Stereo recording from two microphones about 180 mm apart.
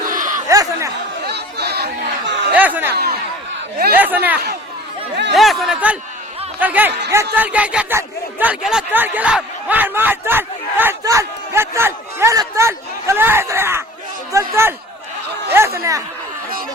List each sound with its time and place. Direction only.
0.1 s a sound: 50° right (ahead or behind)
0.4 s a sound: 20° right (ahead or behind)
1.3 s chatter: 65° right (ahead or behind)
2.6 s speech: 10° right (ahead or behind)
2.9 s speech: 60° right (ahead or behind)
3.9 s speech: 10° right (ahead or behind)